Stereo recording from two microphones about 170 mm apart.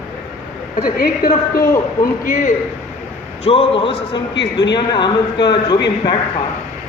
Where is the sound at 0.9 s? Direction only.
60° left (ahead or behind).